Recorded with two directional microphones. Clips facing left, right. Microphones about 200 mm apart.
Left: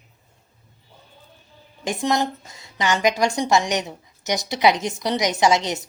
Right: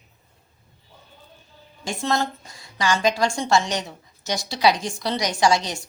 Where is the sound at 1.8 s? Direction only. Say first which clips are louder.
Left 2 dB; 15° left (ahead or behind).